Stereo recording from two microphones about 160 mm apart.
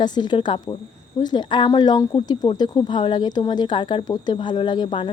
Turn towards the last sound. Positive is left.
turn(degrees=30)  # may be behind; listen again after turning